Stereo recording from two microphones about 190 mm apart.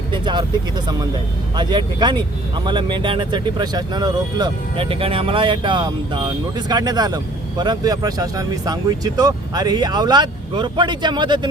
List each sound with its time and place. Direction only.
0.1 s vehicle: 25° right (ahead or behind)
1.5 s speech: 20° right (ahead or behind)